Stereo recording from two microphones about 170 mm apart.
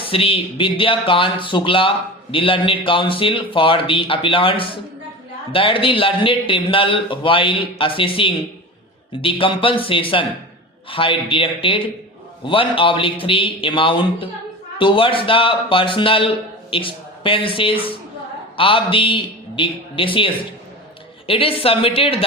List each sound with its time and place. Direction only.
0.0 s a man's voice: 35° left (ahead or behind)